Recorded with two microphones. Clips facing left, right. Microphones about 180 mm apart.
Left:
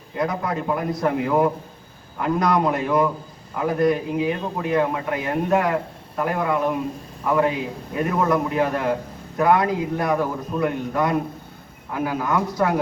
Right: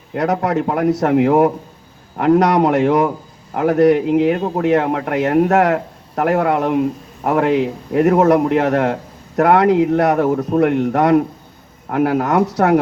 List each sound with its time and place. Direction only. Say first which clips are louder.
0.1 s a man's voice: right 7 dB; 75° right (ahead or behind)